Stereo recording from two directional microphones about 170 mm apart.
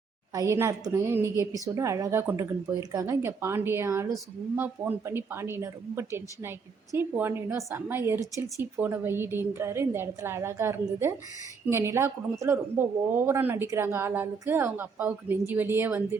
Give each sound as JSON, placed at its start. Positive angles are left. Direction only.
{"t": 0.3, "sound": "a woman's voice", "side_deg": -15}